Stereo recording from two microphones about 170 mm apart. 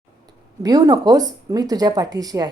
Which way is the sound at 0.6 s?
20° right (ahead or behind).